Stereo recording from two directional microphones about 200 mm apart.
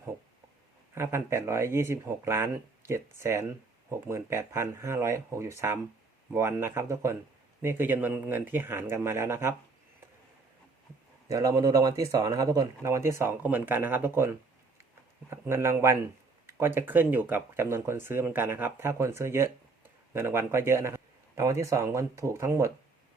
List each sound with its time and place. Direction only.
0.9 s speech: 10° right (ahead or behind)
11.3 s speech: 15° right (ahead or behind)
15.3 s speech: 15° right (ahead or behind)